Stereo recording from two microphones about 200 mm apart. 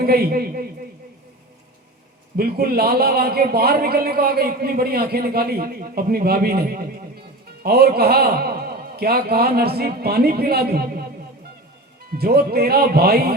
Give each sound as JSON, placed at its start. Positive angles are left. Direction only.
{"t": 0.0, "sound": "a man's voice", "side_deg": -50}
{"t": 2.3, "sound": "a man's voice", "side_deg": -50}
{"t": 12.1, "sound": "a man's voice", "side_deg": -50}